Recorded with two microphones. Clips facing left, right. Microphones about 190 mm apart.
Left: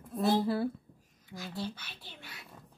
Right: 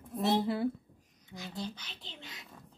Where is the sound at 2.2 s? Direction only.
20° right (ahead or behind).